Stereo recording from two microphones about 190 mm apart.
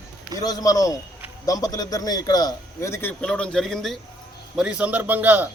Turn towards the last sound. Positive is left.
turn(degrees=-10)  # may be behind; listen again after turning